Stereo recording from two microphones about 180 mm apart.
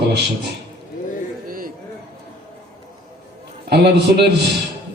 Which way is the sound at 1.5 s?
50° right (ahead or behind).